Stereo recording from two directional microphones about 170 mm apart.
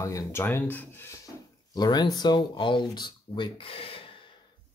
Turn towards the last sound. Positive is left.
turn(degrees=30)  # may be behind; listen again after turning